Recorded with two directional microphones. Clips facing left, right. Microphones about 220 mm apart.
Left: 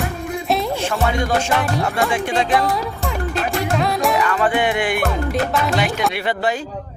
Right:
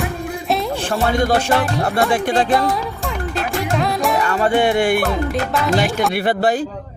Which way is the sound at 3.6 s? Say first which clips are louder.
Even; centre (ahead or behind).